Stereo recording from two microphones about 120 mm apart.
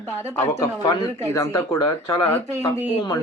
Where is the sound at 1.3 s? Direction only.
30° left (ahead or behind).